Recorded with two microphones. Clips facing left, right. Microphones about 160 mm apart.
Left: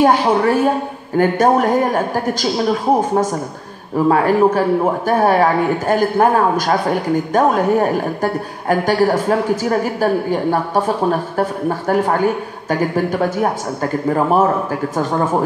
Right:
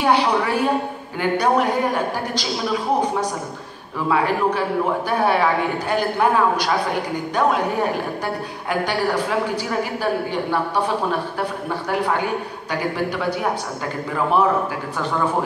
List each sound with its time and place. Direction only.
0.0 s a woman's voice: 45° left (ahead or behind)